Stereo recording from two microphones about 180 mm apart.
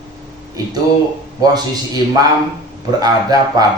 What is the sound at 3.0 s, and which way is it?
Speech, 20° right (ahead or behind).